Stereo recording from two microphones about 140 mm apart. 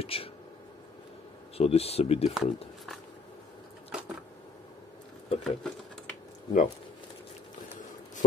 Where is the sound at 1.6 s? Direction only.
45° left (ahead or behind).